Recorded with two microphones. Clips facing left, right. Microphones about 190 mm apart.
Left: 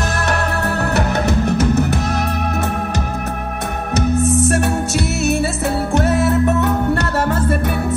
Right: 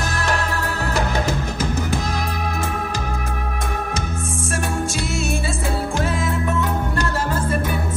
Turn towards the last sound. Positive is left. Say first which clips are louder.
# left 4 dB
turn(degrees=65)  # may be behind; listen again after turning